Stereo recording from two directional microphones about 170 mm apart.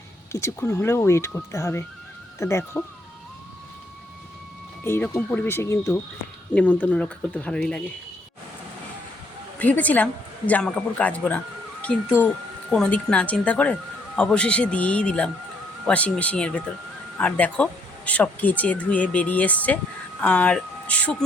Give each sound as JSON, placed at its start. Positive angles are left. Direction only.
{"t": 0.3, "sound": "speech", "side_deg": 15}
{"t": 4.8, "sound": "speech", "side_deg": 10}
{"t": 9.6, "sound": "speech", "side_deg": 10}